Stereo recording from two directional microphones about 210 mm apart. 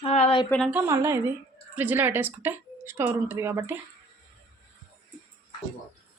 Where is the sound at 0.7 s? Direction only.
15° right (ahead or behind).